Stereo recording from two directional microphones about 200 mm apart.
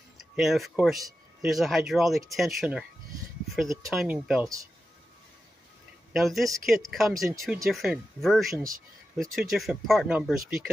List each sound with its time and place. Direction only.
0.2 s speech: centre (ahead or behind)
3.6 s speech: 15° right (ahead or behind)
3.9 s speech: centre (ahead or behind)
6.1 s speech: centre (ahead or behind)